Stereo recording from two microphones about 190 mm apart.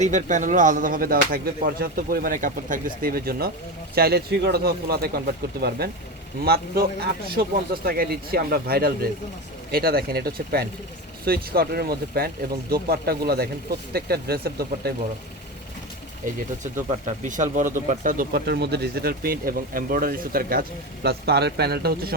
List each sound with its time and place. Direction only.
0.0 s speech: 40° right (ahead or behind); by 14.9 s 55° right (ahead or behind)
16.2 s speech: 45° right (ahead or behind)